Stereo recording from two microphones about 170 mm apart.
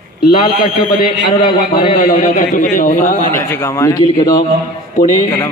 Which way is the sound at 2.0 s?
55° left (ahead or behind).